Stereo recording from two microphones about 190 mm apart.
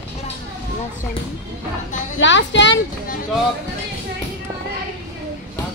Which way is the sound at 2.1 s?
75° left (ahead or behind).